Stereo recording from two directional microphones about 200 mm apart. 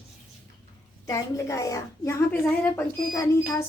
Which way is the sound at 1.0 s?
15° left (ahead or behind).